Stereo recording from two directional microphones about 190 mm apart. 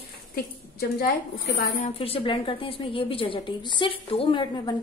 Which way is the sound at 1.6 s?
40° left (ahead or behind).